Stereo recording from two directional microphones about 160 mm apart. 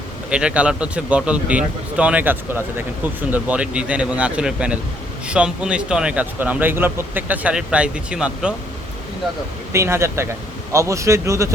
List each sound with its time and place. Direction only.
0.3 s speech: 5° right (ahead or behind)
9.7 s speech: 15° right (ahead or behind)